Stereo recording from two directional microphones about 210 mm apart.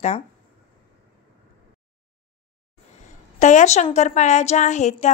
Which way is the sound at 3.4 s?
35° left (ahead or behind).